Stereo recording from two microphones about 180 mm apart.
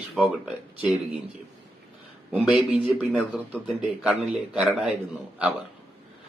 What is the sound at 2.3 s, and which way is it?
Speech, 5° right (ahead or behind).